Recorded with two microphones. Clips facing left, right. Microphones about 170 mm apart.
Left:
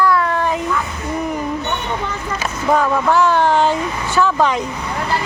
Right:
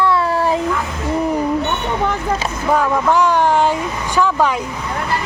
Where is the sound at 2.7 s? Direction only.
10° right (ahead or behind).